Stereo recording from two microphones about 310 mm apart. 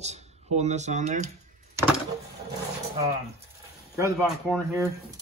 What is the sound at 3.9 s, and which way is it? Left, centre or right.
Speech, centre.